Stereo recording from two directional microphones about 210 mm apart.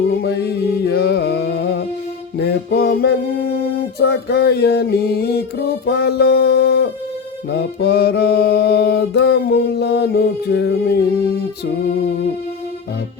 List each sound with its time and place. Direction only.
0.1 s music: 50° left (ahead or behind)
2.4 s mantra: 50° left (ahead or behind)